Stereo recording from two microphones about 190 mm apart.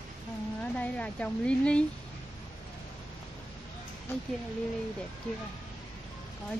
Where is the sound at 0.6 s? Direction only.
5° left (ahead or behind).